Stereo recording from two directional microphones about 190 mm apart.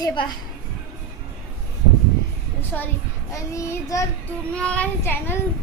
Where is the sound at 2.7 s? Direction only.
5° left (ahead or behind).